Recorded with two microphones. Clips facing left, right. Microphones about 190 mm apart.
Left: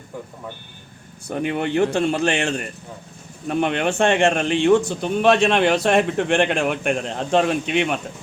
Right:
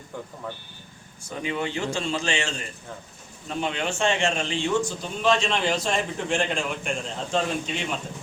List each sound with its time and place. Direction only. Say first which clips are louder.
1.3 s a man's voice: left 7 dB; 60° left (ahead or behind)